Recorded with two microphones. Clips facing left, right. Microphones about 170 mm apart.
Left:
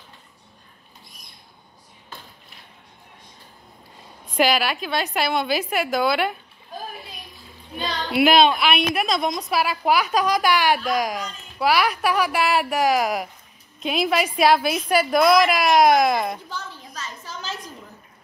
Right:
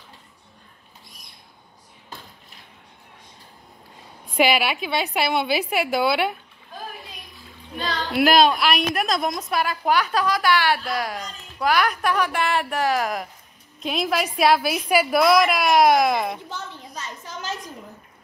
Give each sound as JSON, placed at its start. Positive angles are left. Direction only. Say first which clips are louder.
{"t": 4.5, "sound": "a woman's voice", "louder": "even", "side_deg": -5}
{"t": 7.8, "sound": "a woman's voice", "louder": "left 1 dB", "side_deg": 0}
{"t": 11.7, "sound": "a woman's voice", "louder": "even", "side_deg": 5}
{"t": 16.4, "sound": "a sound", "louder": "even", "side_deg": -20}